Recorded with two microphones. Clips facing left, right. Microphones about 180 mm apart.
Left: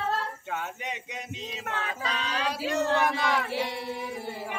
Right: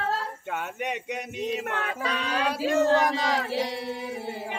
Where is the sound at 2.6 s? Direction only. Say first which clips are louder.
Right 5 dB; 45° right (ahead or behind).